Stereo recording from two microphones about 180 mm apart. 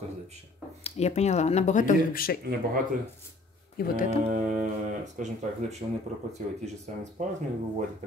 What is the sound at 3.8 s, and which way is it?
Mantra, 60° left (ahead or behind).